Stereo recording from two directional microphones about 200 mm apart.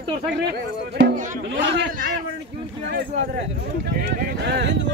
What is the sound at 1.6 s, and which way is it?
Speech, 60° right (ahead or behind).